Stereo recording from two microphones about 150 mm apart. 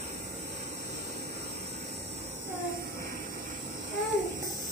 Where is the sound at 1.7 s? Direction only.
45° right (ahead or behind).